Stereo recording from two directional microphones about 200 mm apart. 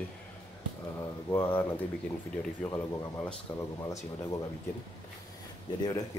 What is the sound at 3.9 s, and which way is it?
Speech, 15° left (ahead or behind).